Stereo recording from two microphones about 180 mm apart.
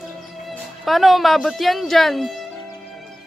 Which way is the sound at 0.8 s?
Centre (ahead or behind).